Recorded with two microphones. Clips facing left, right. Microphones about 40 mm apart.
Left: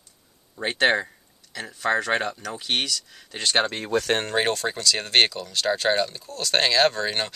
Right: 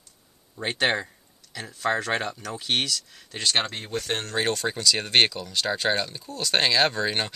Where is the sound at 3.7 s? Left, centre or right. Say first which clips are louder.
Left 6 dB; left.